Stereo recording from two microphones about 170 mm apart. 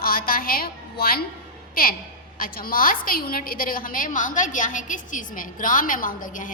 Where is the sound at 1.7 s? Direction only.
60° left (ahead or behind).